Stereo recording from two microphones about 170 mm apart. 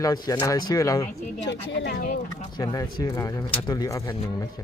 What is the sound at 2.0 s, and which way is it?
Speech, 55° left (ahead or behind).